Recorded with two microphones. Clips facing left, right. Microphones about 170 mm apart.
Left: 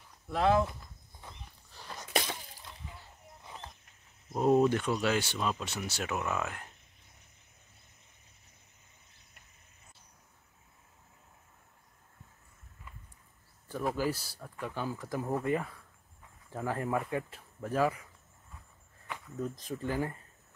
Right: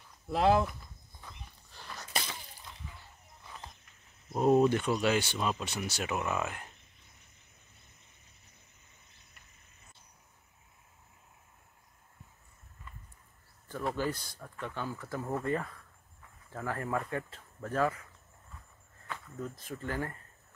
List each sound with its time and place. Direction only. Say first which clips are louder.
0.3 s speech: right 1 dB; 30° right (ahead or behind)
4.3 s speech: right 1 dB; 5° right (ahead or behind)
13.7 s speech: left 1 dB; 10° left (ahead or behind)
19.0 s cricket: left 3 dB; 15° left (ahead or behind)
19.6 s speech: left 3 dB; 15° left (ahead or behind)